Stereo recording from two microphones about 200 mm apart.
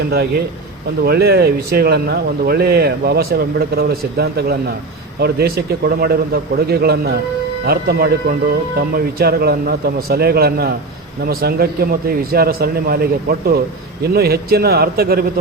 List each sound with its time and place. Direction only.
0.1 s speech: 50° right (ahead or behind)